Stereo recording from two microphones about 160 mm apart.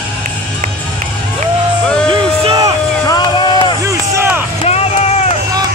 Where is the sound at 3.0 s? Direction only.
25° left (ahead or behind).